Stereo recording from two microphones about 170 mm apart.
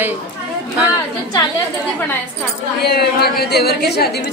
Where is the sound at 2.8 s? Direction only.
70° left (ahead or behind).